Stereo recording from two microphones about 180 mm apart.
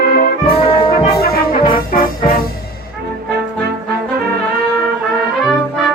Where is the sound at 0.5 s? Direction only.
35° left (ahead or behind).